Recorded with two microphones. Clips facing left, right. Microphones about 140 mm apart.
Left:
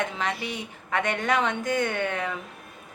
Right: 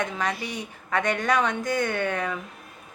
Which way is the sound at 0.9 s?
20° left (ahead or behind).